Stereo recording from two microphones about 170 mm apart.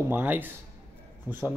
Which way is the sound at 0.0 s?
10° right (ahead or behind).